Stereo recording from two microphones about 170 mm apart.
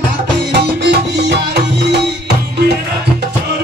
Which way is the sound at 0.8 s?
75° right (ahead or behind).